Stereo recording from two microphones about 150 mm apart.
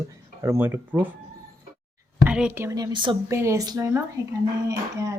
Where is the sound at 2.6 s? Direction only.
20° right (ahead or behind).